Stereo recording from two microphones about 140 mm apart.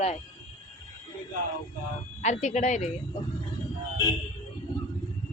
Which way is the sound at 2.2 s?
55° left (ahead or behind).